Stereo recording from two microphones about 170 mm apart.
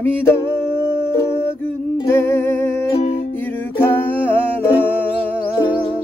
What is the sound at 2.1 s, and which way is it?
Music, 15° left (ahead or behind).